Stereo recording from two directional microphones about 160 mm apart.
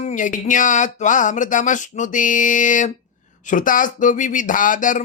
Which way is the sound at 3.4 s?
55° left (ahead or behind).